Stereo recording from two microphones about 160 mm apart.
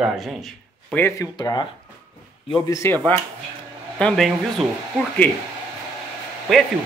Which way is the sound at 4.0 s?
5° left (ahead or behind).